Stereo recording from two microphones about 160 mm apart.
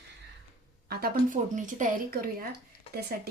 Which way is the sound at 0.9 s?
75° right (ahead or behind).